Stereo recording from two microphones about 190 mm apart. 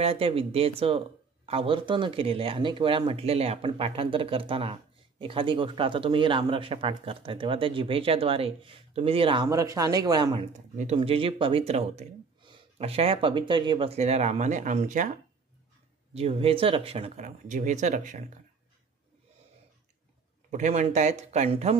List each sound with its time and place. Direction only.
0.0 s speech: 30° right (ahead or behind)
10.5 s speech: 35° right (ahead or behind)
16.1 s speech: 30° right (ahead or behind)
20.5 s speech: 40° right (ahead or behind)